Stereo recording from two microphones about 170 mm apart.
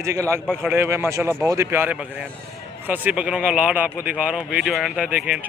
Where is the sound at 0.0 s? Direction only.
15° right (ahead or behind).